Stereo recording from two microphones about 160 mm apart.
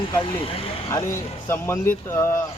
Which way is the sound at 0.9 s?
15° left (ahead or behind).